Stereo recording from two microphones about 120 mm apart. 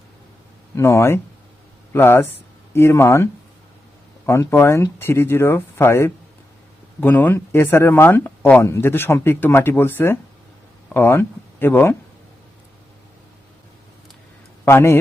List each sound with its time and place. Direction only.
0.8 s speech: 25° left (ahead or behind)
4.3 s speech: 20° left (ahead or behind)
14.6 s a man's voice: 20° left (ahead or behind)